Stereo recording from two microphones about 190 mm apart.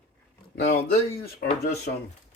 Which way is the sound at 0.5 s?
55° left (ahead or behind).